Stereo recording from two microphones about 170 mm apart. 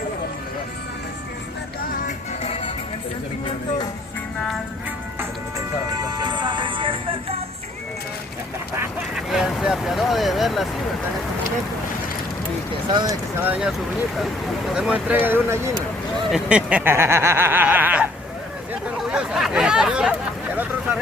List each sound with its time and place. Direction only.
1.9 s music: 50° left (ahead or behind)
6.1 s music: 25° right (ahead or behind)
9.3 s vehicle: centre (ahead or behind)
12.9 s speech: 25° right (ahead or behind)
13.4 s speech: 5° right (ahead or behind)
14.7 s snicker: 5° right (ahead or behind)
18.7 s speech: 5° right (ahead or behind)